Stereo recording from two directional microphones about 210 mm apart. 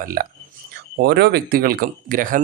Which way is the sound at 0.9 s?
50° right (ahead or behind).